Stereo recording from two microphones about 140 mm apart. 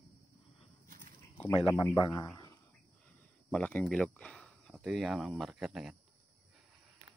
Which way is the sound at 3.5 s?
10° left (ahead or behind).